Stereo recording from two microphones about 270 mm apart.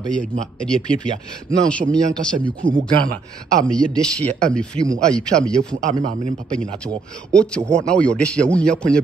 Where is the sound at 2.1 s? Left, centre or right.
Centre.